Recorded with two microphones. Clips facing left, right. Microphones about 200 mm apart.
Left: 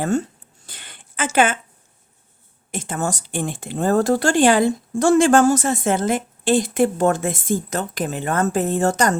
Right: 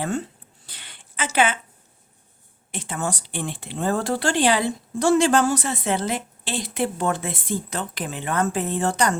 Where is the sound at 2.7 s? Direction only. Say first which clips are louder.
Left 3 dB; 45° left (ahead or behind).